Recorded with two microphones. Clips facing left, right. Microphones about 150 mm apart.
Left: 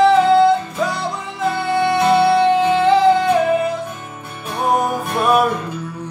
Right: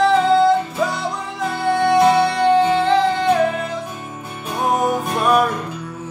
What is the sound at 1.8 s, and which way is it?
Music, 5° left (ahead or behind).